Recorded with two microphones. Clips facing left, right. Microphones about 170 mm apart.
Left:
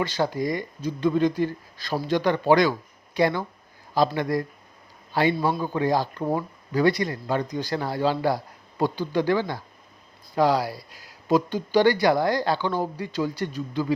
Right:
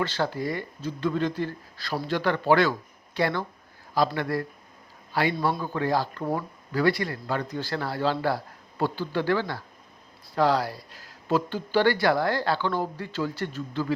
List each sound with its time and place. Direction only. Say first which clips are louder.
0.0 s speech: left 3 dB; 15° left (ahead or behind)